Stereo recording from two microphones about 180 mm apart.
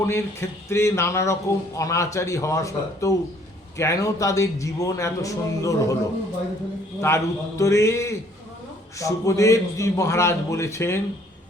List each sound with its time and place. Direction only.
0.0 s speech: 15° left (ahead or behind)
7.0 s speech: 15° left (ahead or behind)